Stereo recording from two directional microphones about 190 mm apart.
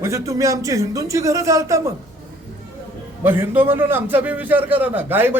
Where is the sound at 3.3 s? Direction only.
10° right (ahead or behind).